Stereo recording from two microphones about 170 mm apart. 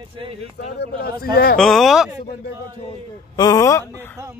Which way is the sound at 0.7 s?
65° left (ahead or behind).